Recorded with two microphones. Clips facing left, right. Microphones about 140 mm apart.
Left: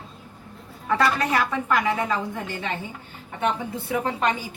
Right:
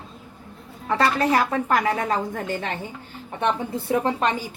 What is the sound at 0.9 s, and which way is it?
A woman's voice, 35° right (ahead or behind).